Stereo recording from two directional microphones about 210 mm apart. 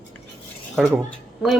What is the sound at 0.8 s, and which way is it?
Speech, centre (ahead or behind).